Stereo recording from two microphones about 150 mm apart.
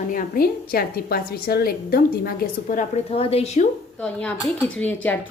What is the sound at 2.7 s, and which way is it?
Speech, 70° left (ahead or behind).